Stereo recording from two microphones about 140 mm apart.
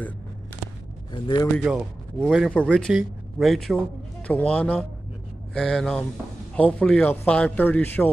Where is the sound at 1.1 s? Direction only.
35° left (ahead or behind).